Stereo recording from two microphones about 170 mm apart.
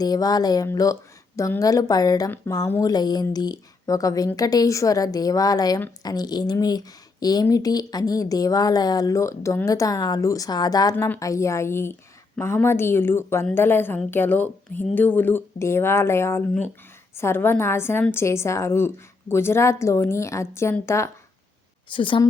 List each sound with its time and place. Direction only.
0.0 s a woman's voice: 25° left (ahead or behind)
21.8 s a woman's voice: 30° left (ahead or behind)